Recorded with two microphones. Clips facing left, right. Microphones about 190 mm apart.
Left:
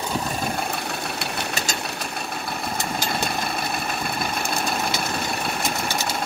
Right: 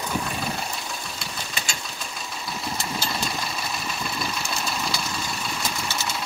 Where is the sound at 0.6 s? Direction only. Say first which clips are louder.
Left 5 dB; 60° left (ahead or behind).